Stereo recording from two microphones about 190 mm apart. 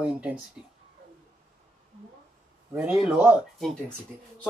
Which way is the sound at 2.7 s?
10° right (ahead or behind).